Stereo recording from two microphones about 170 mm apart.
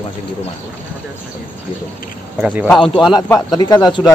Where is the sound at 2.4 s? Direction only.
10° right (ahead or behind).